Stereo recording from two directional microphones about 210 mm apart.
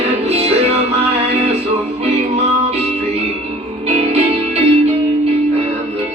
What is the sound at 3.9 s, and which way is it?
Music, 30° right (ahead or behind).